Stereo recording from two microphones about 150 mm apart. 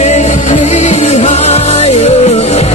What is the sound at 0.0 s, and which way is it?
Music, 45° left (ahead or behind).